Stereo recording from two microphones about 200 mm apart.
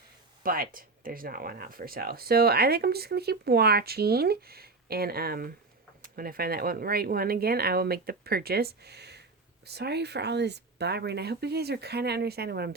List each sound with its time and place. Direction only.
0.4 s speech: 45° right (ahead or behind)